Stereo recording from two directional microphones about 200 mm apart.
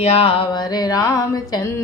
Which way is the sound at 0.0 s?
30° left (ahead or behind).